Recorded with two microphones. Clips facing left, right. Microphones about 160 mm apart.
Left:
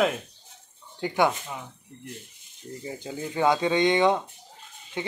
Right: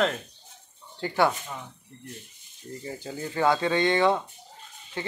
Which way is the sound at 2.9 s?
15° left (ahead or behind).